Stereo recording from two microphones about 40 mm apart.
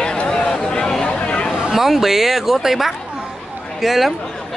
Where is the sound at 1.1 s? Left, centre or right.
Left.